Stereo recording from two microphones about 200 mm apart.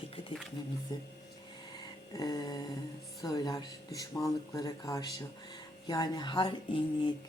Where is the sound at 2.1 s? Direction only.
20° left (ahead or behind).